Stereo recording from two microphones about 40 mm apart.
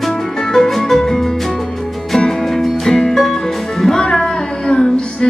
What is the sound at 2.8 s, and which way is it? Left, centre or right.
Music, centre.